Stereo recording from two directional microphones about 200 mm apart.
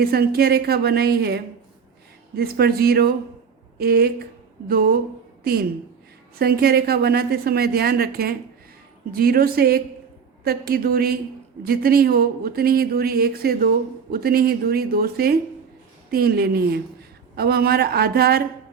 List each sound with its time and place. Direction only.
0.0 s a woman's voice: 50° right (ahead or behind)